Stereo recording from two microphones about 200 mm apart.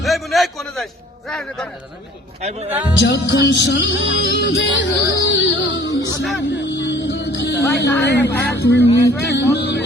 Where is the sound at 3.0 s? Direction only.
60° left (ahead or behind).